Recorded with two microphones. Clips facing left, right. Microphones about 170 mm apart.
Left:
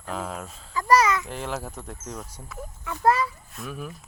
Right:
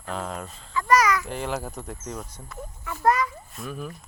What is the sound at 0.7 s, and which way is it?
Babbling, 35° left (ahead or behind).